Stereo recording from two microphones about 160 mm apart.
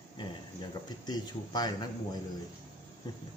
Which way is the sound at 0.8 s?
25° left (ahead or behind).